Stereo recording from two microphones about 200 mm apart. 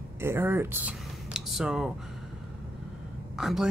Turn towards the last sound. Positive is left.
turn(degrees=0)  # may be behind; listen again after turning